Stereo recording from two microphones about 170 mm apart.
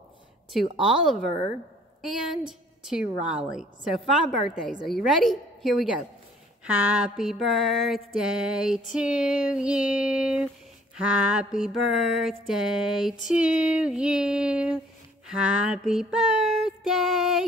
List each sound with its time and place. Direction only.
0.5 s a woman's voice: centre (ahead or behind)
2.0 s a woman's voice: 5° right (ahead or behind)